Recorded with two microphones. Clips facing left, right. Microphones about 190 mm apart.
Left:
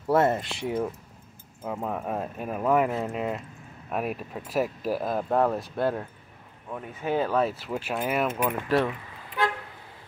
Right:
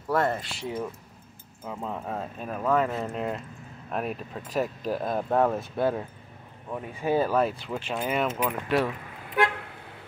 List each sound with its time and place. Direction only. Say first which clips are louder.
0.1 s speech: left 4 dB; 20° left (ahead or behind); by 8.9 s centre (ahead or behind)
9.4 s toot: right 2 dB; 60° right (ahead or behind)